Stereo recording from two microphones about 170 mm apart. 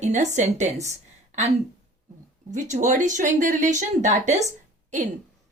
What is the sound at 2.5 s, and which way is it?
Speech, 45° right (ahead or behind).